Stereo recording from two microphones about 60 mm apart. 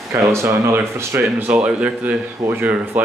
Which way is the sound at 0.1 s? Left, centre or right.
Right.